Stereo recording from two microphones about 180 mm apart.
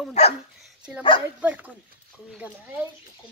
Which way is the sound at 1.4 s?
10° right (ahead or behind).